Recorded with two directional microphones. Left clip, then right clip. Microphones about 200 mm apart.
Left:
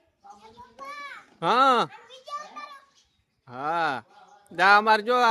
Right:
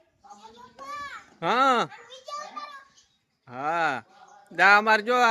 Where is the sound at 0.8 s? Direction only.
15° left (ahead or behind).